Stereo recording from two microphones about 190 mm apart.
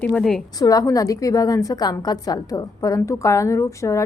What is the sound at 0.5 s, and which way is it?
A woman's voice, 20° left (ahead or behind).